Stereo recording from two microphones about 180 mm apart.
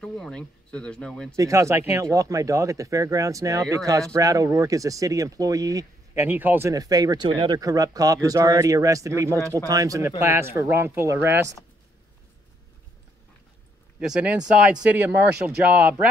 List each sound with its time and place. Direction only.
0.0 s speech: 5° left (ahead or behind)
1.3 s speech: 15° right (ahead or behind)
13.9 s speech: 5° right (ahead or behind)